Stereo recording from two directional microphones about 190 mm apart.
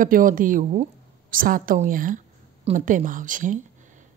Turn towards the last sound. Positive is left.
turn(degrees=-45)  # may be behind; listen again after turning